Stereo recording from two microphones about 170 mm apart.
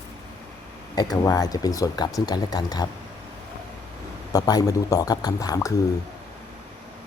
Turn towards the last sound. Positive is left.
turn(degrees=20)  # may be behind; listen again after turning